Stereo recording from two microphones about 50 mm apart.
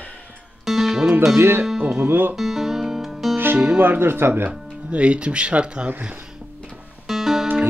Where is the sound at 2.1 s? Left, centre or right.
Right.